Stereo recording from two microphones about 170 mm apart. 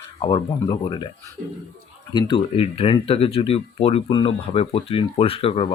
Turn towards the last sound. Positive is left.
turn(degrees=35)  # may be behind; listen again after turning